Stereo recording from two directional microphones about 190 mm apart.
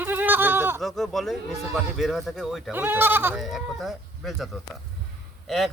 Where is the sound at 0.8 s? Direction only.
Centre (ahead or behind).